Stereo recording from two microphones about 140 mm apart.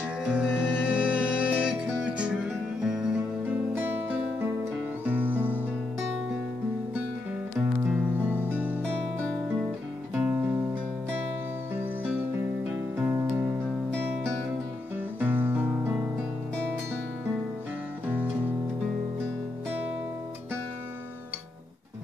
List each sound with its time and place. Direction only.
0.2 s music: 5° right (ahead or behind)
7.8 s music: 10° right (ahead or behind)
10.1 s music: 15° right (ahead or behind)
15.1 s guitar: 10° right (ahead or behind)
18.0 s music: 10° right (ahead or behind)